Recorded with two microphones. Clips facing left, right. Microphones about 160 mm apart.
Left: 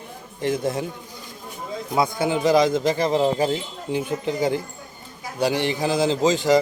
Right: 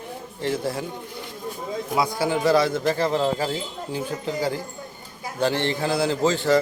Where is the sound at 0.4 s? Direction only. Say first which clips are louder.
Left 2 dB; 20° left (ahead or behind).